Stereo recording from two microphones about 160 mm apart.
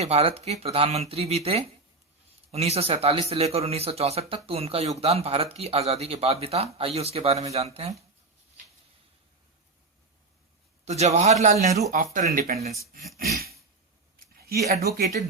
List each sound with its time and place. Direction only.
0.0 s speech: 40° right (ahead or behind)
10.8 s a man's voice: 45° right (ahead or behind)
11.9 s speech: 55° right (ahead or behind)
13.1 s a sound: 75° right (ahead or behind)